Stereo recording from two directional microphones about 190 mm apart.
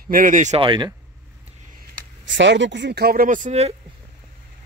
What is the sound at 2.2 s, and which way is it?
Speech, 70° right (ahead or behind).